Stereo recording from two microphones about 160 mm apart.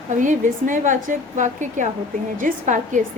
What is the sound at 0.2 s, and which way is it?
A woman's voice, 50° right (ahead or behind).